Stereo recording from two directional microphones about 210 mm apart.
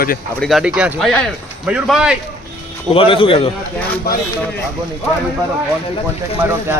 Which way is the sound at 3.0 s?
25° left (ahead or behind).